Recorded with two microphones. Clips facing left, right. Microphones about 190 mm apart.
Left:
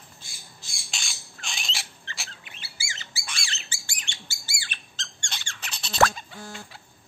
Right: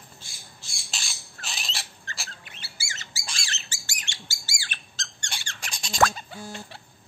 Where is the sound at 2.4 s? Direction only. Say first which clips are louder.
Even; 45° right (ahead or behind).